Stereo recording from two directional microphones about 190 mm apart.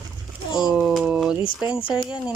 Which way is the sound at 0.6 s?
Centre (ahead or behind).